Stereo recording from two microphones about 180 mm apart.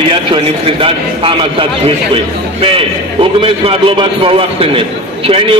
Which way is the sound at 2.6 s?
30° right (ahead or behind).